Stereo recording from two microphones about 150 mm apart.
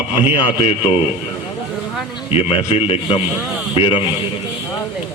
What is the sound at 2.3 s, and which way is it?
Speech, 40° left (ahead or behind).